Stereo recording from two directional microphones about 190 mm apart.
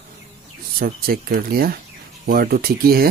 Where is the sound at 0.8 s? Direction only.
50° right (ahead or behind).